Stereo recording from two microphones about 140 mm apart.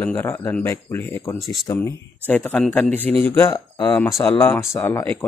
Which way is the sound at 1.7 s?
15° left (ahead or behind).